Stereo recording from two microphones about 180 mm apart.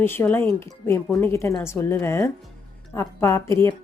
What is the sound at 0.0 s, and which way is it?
A woman's voice, 10° left (ahead or behind).